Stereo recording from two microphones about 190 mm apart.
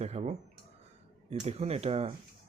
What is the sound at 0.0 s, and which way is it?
Speech, 35° right (ahead or behind).